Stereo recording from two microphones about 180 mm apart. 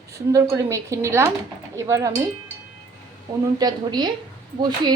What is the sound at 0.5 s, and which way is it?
Speech, 15° right (ahead or behind).